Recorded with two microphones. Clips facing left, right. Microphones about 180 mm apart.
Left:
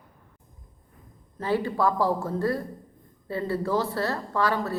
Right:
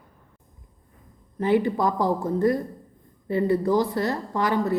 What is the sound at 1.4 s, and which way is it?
A woman's voice, 20° right (ahead or behind).